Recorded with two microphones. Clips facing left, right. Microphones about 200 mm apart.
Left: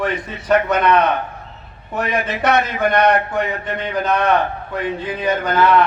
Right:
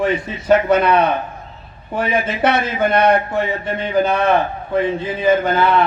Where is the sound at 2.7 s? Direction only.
25° right (ahead or behind).